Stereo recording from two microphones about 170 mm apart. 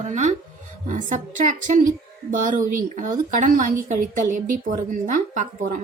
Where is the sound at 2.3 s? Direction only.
50° right (ahead or behind).